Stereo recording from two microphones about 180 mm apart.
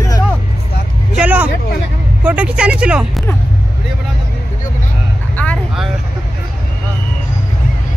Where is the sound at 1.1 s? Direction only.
5° right (ahead or behind).